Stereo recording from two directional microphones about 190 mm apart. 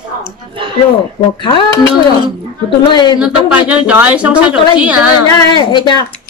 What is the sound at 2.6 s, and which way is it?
Speech, 25° left (ahead or behind).